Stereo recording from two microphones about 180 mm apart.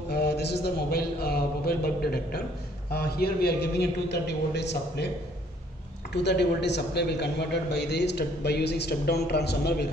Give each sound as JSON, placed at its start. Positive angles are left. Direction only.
{"t": 0.1, "sound": "a man's voice", "side_deg": 65}
{"t": 6.1, "sound": "a man's voice", "side_deg": 70}